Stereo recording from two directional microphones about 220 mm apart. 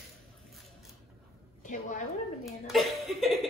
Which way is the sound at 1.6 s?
35° left (ahead or behind).